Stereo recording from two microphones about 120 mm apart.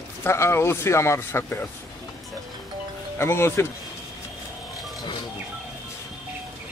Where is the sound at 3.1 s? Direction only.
20° left (ahead or behind).